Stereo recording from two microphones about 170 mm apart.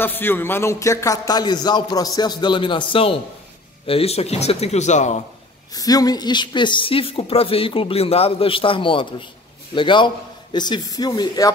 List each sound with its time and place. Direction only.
0.0 s a man's voice: 10° left (ahead or behind); by 5.2 s 45° left (ahead or behind)
5.7 s a man's voice: 20° left (ahead or behind)